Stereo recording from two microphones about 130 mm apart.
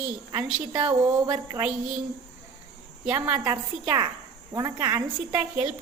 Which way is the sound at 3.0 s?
10° right (ahead or behind).